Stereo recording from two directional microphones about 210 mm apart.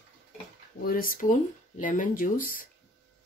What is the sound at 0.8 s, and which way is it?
Speech, 40° left (ahead or behind).